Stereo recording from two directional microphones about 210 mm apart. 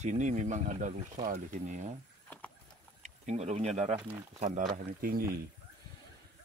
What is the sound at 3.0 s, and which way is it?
Speech, 35° right (ahead or behind).